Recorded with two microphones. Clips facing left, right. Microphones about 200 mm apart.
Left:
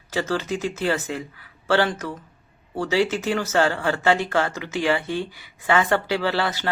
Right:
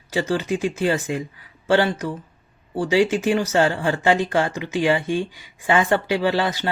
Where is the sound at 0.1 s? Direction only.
15° right (ahead or behind).